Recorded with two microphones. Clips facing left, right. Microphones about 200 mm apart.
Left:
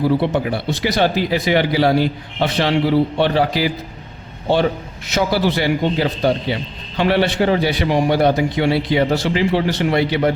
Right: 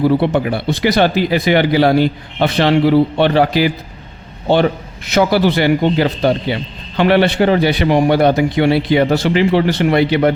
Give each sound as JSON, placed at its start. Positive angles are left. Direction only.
{"t": 0.2, "sound": "a man's voice", "side_deg": -60}
{"t": 5.0, "sound": "a man's voice", "side_deg": -65}